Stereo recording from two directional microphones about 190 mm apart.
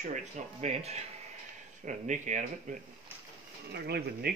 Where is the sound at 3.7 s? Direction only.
60° right (ahead or behind).